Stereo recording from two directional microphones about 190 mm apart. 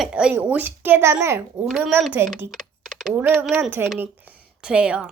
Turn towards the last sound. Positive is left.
turn(degrees=-5)  # may be behind; listen again after turning